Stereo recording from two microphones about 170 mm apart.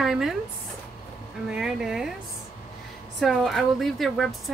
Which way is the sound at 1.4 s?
5° right (ahead or behind).